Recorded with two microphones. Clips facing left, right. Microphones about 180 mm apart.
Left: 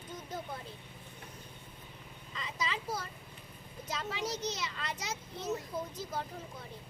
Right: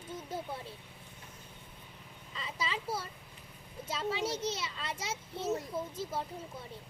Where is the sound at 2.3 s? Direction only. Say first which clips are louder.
Even; 30° right (ahead or behind).